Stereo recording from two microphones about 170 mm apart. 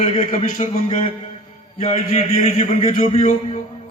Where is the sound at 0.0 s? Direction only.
40° left (ahead or behind).